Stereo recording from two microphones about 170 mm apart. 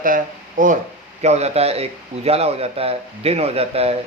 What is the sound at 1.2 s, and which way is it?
Speech, 40° right (ahead or behind).